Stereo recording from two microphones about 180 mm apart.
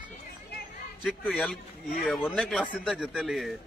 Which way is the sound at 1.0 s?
Centre (ahead or behind).